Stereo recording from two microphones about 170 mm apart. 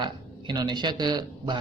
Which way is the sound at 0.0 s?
25° right (ahead or behind).